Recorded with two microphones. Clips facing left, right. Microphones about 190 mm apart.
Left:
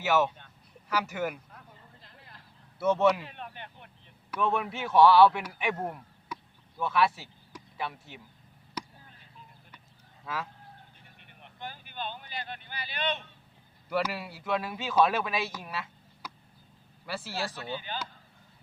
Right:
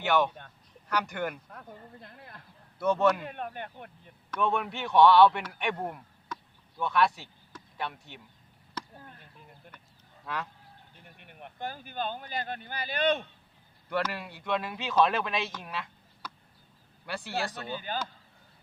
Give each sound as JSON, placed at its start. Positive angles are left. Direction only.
{"t": 0.0, "sound": "a man's voice", "side_deg": 5}
{"t": 1.5, "sound": "a sound", "side_deg": -55}
{"t": 2.7, "sound": "a man's voice", "side_deg": 5}
{"t": 3.2, "sound": "speech", "side_deg": -50}
{"t": 4.3, "sound": "a man's voice", "side_deg": 0}
{"t": 9.0, "sound": "a sound", "side_deg": -55}
{"t": 10.2, "sound": "a man's voice", "side_deg": 0}
{"t": 11.0, "sound": "speech", "side_deg": -55}
{"t": 13.9, "sound": "a man's voice", "side_deg": 5}
{"t": 17.7, "sound": "speech", "side_deg": -45}